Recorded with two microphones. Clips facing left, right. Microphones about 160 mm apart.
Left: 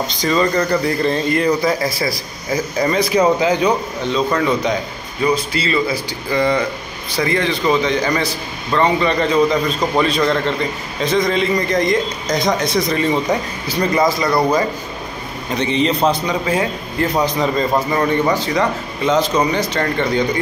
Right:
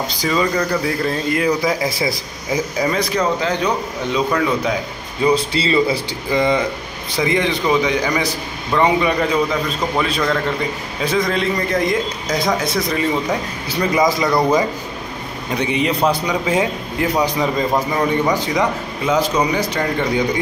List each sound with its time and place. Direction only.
0.1 s a man's voice: 5° right (ahead or behind)
2.8 s a man's voice: centre (ahead or behind)
3.1 s speech: 10° left (ahead or behind)
4.3 s a man's voice: 5° right (ahead or behind)
5.3 s speech: 30° right (ahead or behind)
6.3 s a man's voice: 15° right (ahead or behind)
13.9 s a man's voice: 15° right (ahead or behind)